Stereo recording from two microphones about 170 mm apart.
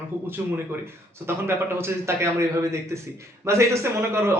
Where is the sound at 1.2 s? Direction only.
15° right (ahead or behind).